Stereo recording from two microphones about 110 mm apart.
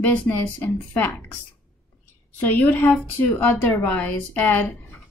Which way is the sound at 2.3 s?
15° left (ahead or behind).